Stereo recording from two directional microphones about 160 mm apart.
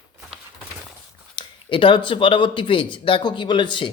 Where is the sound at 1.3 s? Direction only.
30° left (ahead or behind).